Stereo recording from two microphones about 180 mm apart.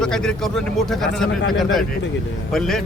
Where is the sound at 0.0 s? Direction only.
5° left (ahead or behind).